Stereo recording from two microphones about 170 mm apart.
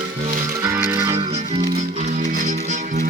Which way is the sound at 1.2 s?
35° right (ahead or behind).